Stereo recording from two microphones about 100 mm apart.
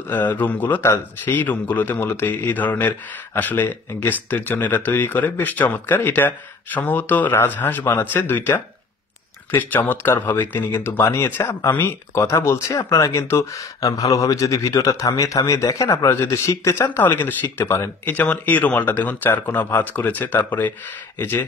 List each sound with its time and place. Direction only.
0.1 s speech: 15° left (ahead or behind)